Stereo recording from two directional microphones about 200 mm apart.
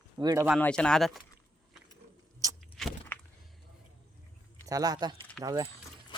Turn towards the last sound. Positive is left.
turn(degrees=-25)  # may be behind; listen again after turning